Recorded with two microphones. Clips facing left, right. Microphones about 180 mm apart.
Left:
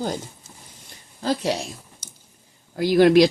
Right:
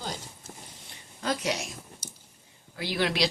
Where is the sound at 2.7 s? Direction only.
45° left (ahead or behind).